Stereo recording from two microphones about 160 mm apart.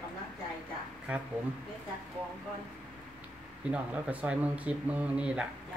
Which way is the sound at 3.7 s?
10° right (ahead or behind).